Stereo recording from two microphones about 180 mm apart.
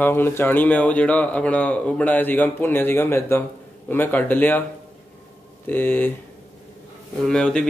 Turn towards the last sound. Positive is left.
turn(degrees=5)  # may be behind; listen again after turning